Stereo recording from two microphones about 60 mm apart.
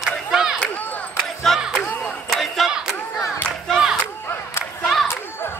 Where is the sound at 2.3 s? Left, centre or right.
Centre.